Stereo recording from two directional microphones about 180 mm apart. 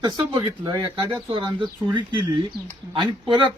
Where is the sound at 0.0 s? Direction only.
25° right (ahead or behind).